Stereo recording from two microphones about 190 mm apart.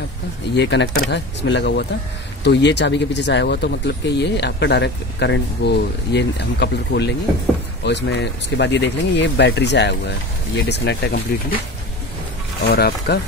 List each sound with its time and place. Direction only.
0.6 s speech: 65° left (ahead or behind)
12.7 s speech: 55° left (ahead or behind)